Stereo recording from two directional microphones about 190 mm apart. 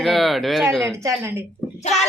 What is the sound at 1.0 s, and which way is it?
Speech, 15° right (ahead or behind).